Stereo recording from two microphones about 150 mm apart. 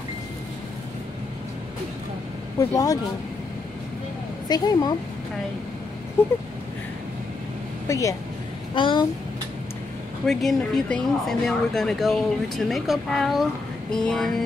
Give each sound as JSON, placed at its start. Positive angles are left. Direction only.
{"t": 2.7, "sound": "speech", "side_deg": 25}
{"t": 4.5, "sound": "speech", "side_deg": 25}
{"t": 6.2, "sound": "speech", "side_deg": 15}
{"t": 7.9, "sound": "speech", "side_deg": 20}
{"t": 8.7, "sound": "speech", "side_deg": 35}
{"t": 10.2, "sound": "speech", "side_deg": 0}